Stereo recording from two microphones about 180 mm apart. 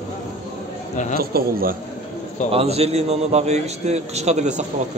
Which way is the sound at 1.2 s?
55° right (ahead or behind).